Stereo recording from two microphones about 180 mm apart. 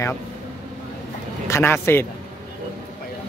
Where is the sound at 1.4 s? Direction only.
15° left (ahead or behind).